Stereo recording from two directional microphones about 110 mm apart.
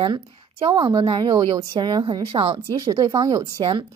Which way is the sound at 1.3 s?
35° right (ahead or behind).